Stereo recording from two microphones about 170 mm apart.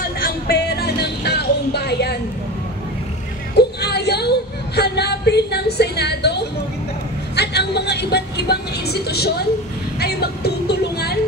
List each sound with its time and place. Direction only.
0.2 s music: 70° left (ahead or behind)
3.5 s a sound: 75° left (ahead or behind)
7.3 s music: 75° left (ahead or behind)